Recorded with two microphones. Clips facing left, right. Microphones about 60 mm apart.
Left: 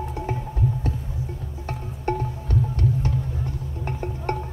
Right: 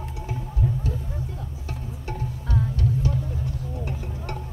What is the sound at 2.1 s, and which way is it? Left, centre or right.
Music, left.